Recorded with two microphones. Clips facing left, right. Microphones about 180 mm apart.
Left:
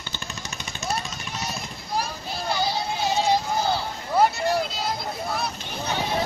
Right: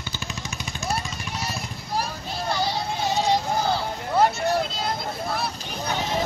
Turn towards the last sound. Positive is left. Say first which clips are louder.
# right 1 dB
turn(degrees=0)  # may be behind; listen again after turning